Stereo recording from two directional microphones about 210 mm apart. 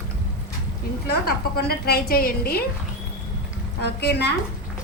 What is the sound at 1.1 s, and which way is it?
A woman's voice, 50° left (ahead or behind).